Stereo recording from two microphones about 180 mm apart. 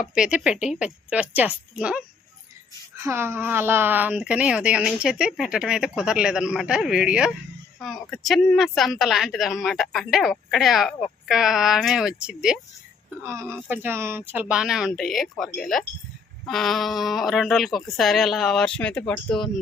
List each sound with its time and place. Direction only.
0.1 s a woman's voice: 5° right (ahead or behind)
13.2 s a woman's voice: 15° right (ahead or behind)
16.5 s a woman's voice: centre (ahead or behind)